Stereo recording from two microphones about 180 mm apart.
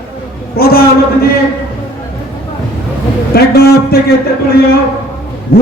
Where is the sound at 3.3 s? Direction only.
60° left (ahead or behind).